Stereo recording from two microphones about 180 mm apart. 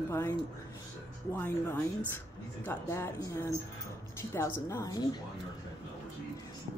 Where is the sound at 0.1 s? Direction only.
15° left (ahead or behind).